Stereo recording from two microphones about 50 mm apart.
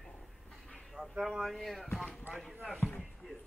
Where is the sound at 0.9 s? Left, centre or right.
Centre.